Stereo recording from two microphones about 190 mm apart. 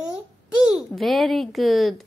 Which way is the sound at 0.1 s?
5° right (ahead or behind).